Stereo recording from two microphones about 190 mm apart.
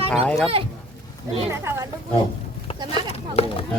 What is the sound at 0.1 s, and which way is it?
Speech, centre (ahead or behind).